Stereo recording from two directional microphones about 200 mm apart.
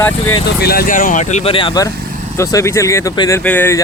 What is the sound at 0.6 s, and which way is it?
Speech, 50° left (ahead or behind).